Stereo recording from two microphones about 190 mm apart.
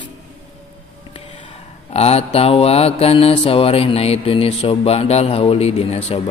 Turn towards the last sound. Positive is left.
turn(degrees=35)  # may be behind; listen again after turning